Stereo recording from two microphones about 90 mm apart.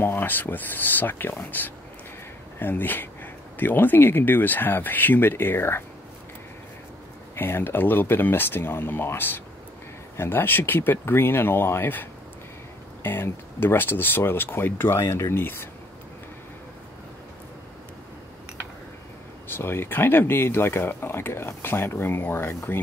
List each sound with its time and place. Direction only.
0.0 s speech: 25° left (ahead or behind)
7.3 s speech: 25° left (ahead or behind)
19.4 s speech: 25° left (ahead or behind)